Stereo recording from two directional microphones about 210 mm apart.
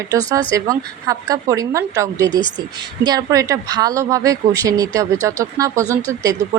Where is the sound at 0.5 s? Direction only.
15° right (ahead or behind).